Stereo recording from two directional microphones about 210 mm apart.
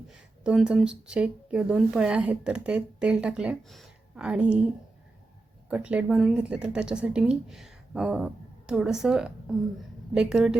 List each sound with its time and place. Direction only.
0.4 s speech: 5° right (ahead or behind)
5.6 s speech: 5° right (ahead or behind)